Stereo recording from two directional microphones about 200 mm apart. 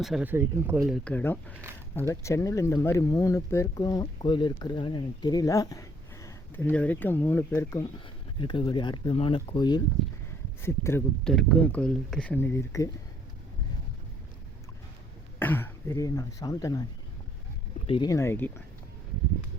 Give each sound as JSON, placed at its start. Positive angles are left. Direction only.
{"t": 0.0, "sound": "speech", "side_deg": -5}
{"t": 0.9, "sound": "speech", "side_deg": 5}
{"t": 15.4, "sound": "speech", "side_deg": 10}
{"t": 17.8, "sound": "speech", "side_deg": 25}